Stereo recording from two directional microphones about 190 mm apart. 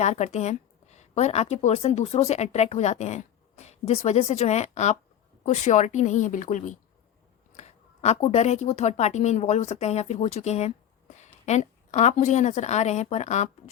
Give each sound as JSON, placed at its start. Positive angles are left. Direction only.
{"t": 0.0, "sound": "a woman's voice", "side_deg": 40}
{"t": 8.0, "sound": "a woman's voice", "side_deg": 35}